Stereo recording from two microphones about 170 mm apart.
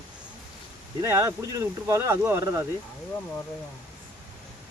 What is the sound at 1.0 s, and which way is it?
Speech, 15° right (ahead or behind).